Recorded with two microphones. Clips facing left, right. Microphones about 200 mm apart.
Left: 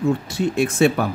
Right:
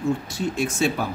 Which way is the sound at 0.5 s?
60° left (ahead or behind).